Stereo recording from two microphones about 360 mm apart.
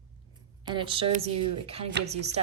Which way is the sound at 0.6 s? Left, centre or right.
Centre.